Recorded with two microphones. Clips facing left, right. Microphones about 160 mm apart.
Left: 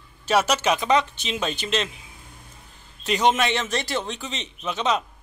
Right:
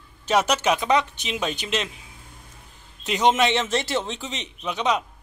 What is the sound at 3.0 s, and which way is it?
A man's voice, 20° right (ahead or behind).